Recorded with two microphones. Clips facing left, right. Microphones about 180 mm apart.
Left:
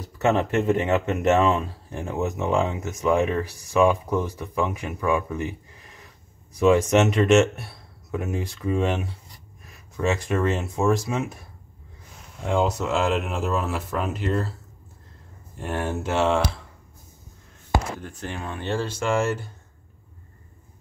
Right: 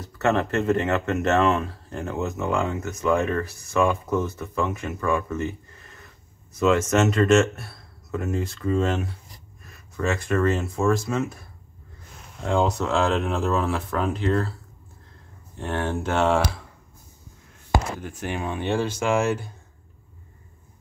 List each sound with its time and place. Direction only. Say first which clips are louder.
0.0 s speech: left 1 dB; 15° left (ahead or behind)
12.4 s speech: even; 5° left (ahead or behind)
15.5 s speech: right 1 dB; 10° left (ahead or behind)
18.0 s speech: right 4 dB; 10° right (ahead or behind)